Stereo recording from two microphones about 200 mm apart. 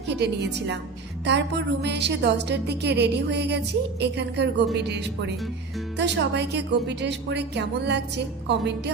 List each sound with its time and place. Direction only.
0.1 s a woman's voice: 60° right (ahead or behind)